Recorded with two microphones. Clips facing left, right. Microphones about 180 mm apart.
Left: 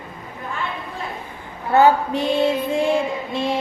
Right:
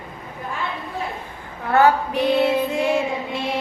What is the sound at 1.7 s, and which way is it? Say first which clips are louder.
Female singing: left 1 dB; 25° left (ahead or behind).